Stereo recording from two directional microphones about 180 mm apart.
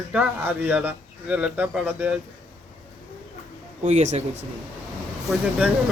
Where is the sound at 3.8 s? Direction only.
40° right (ahead or behind).